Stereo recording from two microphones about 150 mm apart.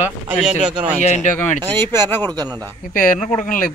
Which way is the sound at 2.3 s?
25° right (ahead or behind).